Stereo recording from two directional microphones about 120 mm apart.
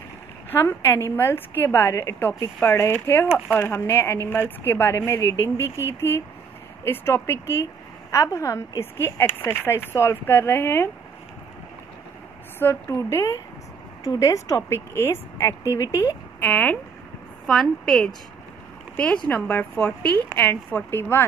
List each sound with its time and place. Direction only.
0.5 s a woman's voice: 15° left (ahead or behind)
12.5 s a woman's voice: 20° left (ahead or behind)
16.3 s a woman's voice: 15° left (ahead or behind)